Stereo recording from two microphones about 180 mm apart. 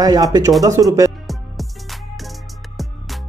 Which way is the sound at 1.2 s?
Centre (ahead or behind).